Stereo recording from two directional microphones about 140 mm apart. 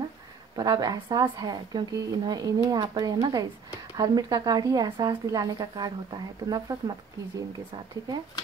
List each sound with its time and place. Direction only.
0.6 s a woman's voice: 30° right (ahead or behind)